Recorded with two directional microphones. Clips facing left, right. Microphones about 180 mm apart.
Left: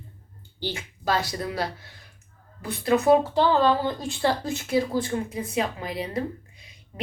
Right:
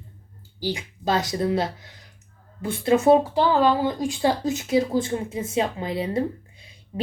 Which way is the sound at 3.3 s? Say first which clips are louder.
Right 1 dB; 10° right (ahead or behind).